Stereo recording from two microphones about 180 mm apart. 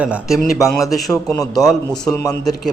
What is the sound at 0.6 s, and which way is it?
Speech, 15° left (ahead or behind).